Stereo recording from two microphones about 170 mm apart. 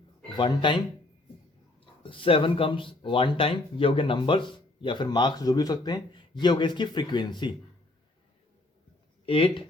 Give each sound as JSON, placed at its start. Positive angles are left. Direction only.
{"t": 0.3, "sound": "speech", "side_deg": 25}
{"t": 2.0, "sound": "speech", "side_deg": 30}
{"t": 9.2, "sound": "speech", "side_deg": 30}